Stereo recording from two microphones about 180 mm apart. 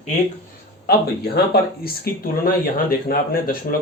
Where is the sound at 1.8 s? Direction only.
55° left (ahead or behind).